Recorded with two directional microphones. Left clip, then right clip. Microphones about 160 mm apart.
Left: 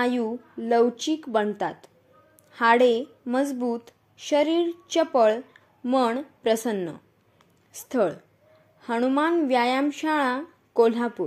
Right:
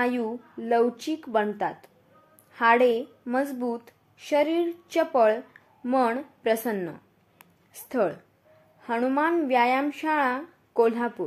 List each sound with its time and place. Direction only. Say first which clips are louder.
0.0 s a woman's voice: left 1 dB; 15° left (ahead or behind)